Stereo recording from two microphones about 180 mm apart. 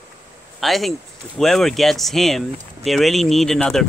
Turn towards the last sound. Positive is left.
turn(degrees=0)  # may be behind; listen again after turning